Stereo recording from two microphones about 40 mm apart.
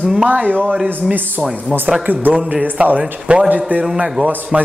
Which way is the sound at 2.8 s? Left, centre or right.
Right.